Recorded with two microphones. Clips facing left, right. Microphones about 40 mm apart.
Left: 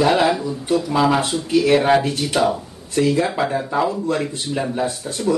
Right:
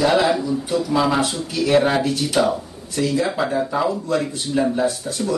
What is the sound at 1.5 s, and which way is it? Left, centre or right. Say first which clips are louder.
Speech: left 3 dB; left.